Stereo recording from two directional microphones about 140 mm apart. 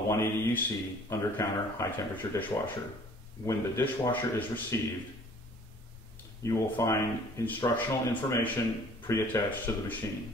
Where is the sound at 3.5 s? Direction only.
20° left (ahead or behind).